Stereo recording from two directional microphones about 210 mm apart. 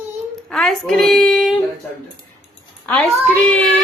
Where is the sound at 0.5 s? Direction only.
Centre (ahead or behind).